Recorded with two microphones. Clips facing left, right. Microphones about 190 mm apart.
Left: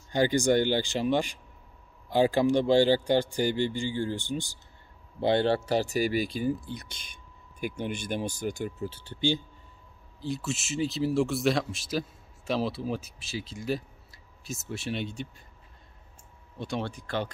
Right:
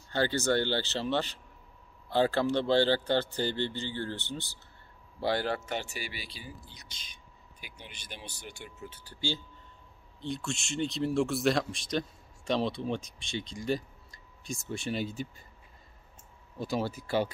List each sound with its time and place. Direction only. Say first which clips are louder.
0.1 s speech: left 5 dB; 15° left (ahead or behind)
5.2 s speech: left 6 dB; 25° left (ahead or behind)
10.2 s speech: left 3 dB; 5° left (ahead or behind)
16.5 s speech: right 1 dB; 5° right (ahead or behind)